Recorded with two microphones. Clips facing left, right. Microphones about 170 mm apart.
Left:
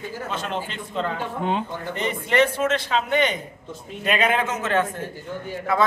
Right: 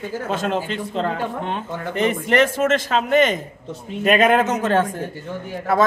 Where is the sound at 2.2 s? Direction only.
45° right (ahead or behind).